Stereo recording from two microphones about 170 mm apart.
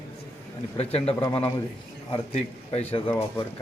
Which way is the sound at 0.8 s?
35° left (ahead or behind).